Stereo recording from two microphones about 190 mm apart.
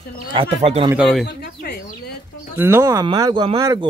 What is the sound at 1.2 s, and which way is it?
Chicken, 60° left (ahead or behind).